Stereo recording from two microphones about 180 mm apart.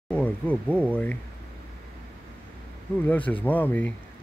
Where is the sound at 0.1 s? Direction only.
10° left (ahead or behind).